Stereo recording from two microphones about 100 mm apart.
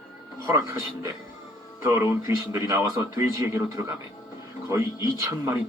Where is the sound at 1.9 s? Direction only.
30° right (ahead or behind).